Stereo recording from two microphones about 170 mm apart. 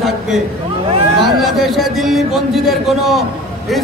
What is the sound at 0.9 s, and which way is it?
Speech, 35° right (ahead or behind).